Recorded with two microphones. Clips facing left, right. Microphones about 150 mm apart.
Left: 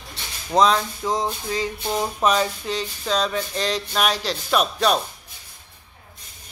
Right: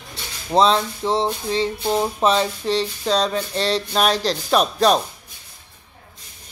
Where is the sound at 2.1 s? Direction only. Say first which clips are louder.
Right 2 dB; 30° right (ahead or behind).